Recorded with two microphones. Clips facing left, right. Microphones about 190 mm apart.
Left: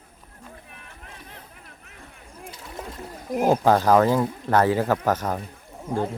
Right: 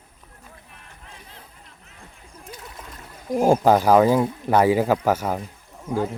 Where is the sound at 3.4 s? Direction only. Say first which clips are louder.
Right 2 dB; 10° right (ahead or behind).